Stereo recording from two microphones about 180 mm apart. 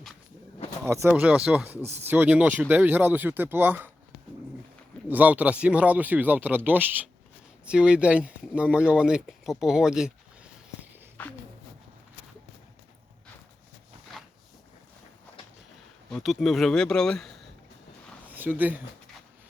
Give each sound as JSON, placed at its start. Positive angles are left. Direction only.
{"t": 0.9, "sound": "speech", "side_deg": -15}
{"t": 1.8, "sound": "speech", "side_deg": -35}
{"t": 2.0, "sound": "speech", "side_deg": -10}
{"t": 5.0, "sound": "speech", "side_deg": -10}
{"t": 11.2, "sound": "a sound", "side_deg": 10}
{"t": 14.2, "sound": "a sound", "side_deg": 0}
{"t": 16.0, "sound": "speech", "side_deg": 0}
{"t": 18.3, "sound": "speech", "side_deg": -10}